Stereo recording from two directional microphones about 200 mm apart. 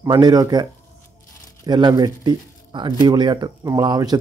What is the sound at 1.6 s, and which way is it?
Speech, 20° right (ahead or behind).